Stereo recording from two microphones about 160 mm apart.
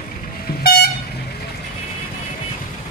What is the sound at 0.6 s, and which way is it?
Vehicle, 75° left (ahead or behind).